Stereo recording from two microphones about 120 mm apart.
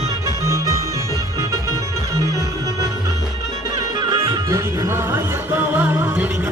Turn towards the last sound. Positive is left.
turn(degrees=-15)  # may be behind; listen again after turning